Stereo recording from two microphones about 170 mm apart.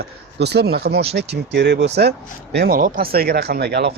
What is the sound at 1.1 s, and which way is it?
Speech, 90° right.